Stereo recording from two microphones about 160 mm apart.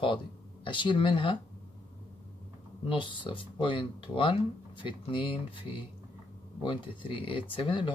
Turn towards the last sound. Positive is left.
turn(degrees=30)  # may be behind; listen again after turning